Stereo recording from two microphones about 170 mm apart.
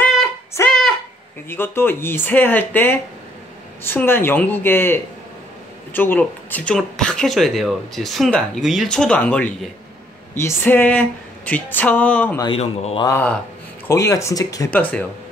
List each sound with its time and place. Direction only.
0.0 s a sound: centre (ahead or behind)
0.6 s a sound: 15° left (ahead or behind)
1.5 s speech: 15° left (ahead or behind)
12.4 s speech: 30° left (ahead or behind)
13.0 s speech: 10° left (ahead or behind)
14.7 s speech: 10° left (ahead or behind)